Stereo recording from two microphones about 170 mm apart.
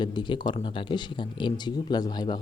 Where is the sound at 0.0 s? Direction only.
25° left (ahead or behind).